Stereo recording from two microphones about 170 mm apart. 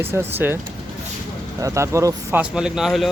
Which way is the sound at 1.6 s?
15° right (ahead or behind).